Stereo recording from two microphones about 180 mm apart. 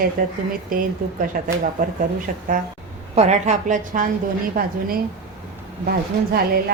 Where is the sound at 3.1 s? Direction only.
40° right (ahead or behind).